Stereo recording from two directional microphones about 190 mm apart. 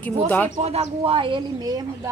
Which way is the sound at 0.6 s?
35° right (ahead or behind).